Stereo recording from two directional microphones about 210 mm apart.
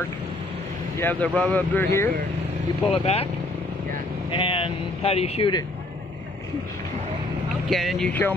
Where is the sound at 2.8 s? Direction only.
25° left (ahead or behind).